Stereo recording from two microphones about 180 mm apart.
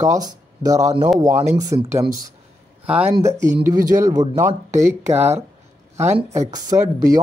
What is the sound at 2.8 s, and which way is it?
Speech, 10° right (ahead or behind).